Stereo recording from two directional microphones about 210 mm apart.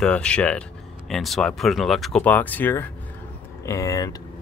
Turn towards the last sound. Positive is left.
turn(degrees=15)  # may be behind; listen again after turning